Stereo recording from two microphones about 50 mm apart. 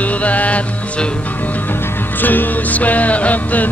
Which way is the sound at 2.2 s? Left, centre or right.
Left.